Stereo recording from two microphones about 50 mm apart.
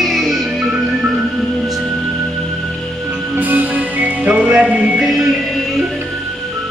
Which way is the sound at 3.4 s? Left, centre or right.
Right.